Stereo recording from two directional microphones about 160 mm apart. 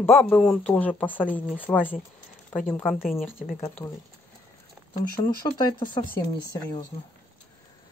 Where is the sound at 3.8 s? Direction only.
25° left (ahead or behind).